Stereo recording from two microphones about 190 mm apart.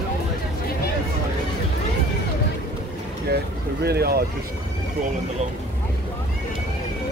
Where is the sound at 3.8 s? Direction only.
55° right (ahead or behind).